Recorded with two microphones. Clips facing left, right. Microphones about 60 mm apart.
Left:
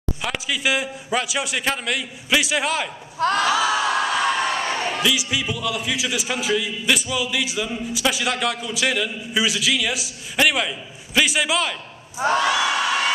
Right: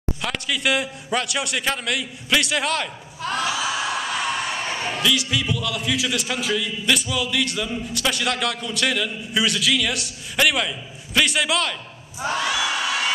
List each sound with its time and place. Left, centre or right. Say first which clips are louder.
0.2 s a man's voice: left 1 dB; centre
3.2 s a sound: left 6 dB; left
3.4 s a sound: left 5 dB; left
4.9 s a man's voice: even; centre
12.2 s crowd: left 5 dB; left
12.4 s crowd: left 3 dB; centre